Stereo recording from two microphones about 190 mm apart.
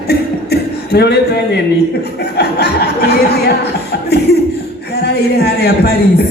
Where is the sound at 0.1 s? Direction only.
60° left (ahead or behind).